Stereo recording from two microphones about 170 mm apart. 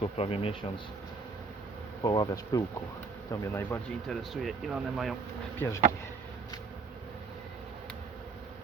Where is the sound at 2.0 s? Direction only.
25° left (ahead or behind).